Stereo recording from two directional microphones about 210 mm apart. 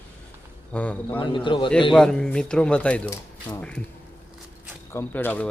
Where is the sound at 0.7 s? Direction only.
5° left (ahead or behind).